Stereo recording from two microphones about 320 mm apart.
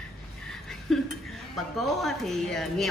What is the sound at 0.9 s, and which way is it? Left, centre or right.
Speech, centre.